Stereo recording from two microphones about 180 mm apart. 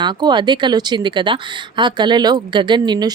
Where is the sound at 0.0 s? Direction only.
25° right (ahead or behind).